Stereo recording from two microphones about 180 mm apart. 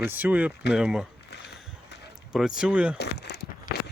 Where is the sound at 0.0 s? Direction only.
10° right (ahead or behind).